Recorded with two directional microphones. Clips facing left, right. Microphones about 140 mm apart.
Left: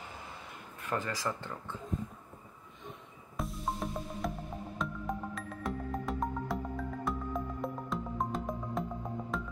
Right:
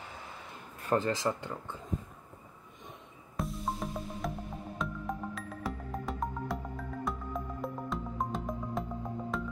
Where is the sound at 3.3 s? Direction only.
Centre (ahead or behind).